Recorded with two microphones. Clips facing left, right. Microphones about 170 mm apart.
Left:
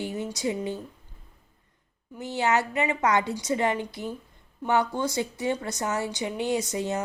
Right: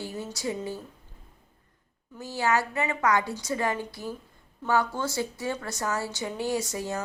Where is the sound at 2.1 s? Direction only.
20° left (ahead or behind).